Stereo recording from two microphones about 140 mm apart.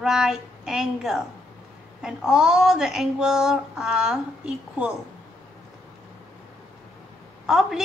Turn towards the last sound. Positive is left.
turn(degrees=-5)  # may be behind; listen again after turning